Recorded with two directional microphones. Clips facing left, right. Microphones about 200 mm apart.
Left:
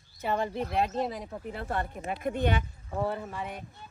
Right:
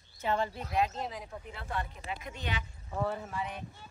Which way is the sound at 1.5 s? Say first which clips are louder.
Left 5 dB; 50° left (ahead or behind).